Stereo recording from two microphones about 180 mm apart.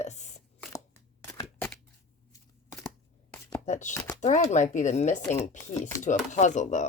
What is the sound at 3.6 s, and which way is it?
Speech, 40° left (ahead or behind).